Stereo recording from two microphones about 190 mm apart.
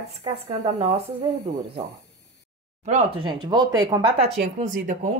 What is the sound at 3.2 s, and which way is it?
Speech, 20° right (ahead or behind).